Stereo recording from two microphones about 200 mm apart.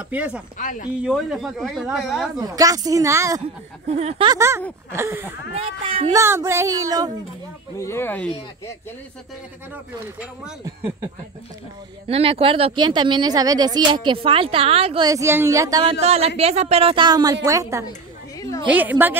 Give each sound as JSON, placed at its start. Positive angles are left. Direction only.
{"t": 0.1, "sound": "speech", "side_deg": -10}
{"t": 0.6, "sound": "speech", "side_deg": 40}
{"t": 1.0, "sound": "speech", "side_deg": 0}
{"t": 2.4, "sound": "speech", "side_deg": -20}
{"t": 3.8, "sound": "speech", "side_deg": -30}
{"t": 4.4, "sound": "speech", "side_deg": -15}
{"t": 5.5, "sound": "speech", "side_deg": -30}
{"t": 6.1, "sound": "speech", "side_deg": -15}
{"t": 7.8, "sound": "speech", "side_deg": 10}
{"t": 12.1, "sound": "speech", "side_deg": -30}
{"t": 15.0, "sound": "speech", "side_deg": -15}
{"t": 15.9, "sound": "speech", "side_deg": -30}